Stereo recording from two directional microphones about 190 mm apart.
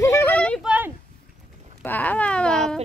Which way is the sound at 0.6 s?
10° right (ahead or behind).